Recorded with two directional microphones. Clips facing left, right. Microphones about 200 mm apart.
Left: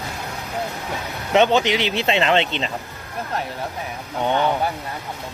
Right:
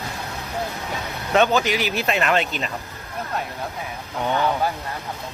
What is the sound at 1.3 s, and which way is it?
Speech, 20° left (ahead or behind).